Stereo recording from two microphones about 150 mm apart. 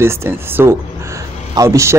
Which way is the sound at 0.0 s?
15° right (ahead or behind).